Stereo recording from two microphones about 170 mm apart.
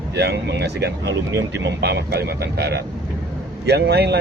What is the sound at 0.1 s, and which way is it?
Speech, 80° right.